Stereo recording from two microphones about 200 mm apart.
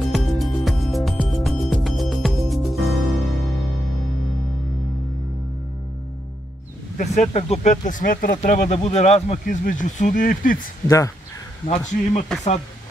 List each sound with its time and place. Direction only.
0.1 s music: centre (ahead or behind)
7.0 s speech: 35° left (ahead or behind)
11.6 s speech: 35° left (ahead or behind)